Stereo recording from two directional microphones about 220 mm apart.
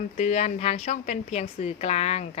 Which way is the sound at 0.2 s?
30° left (ahead or behind).